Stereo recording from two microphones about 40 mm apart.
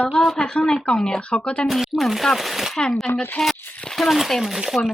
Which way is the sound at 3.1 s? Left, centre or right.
Left.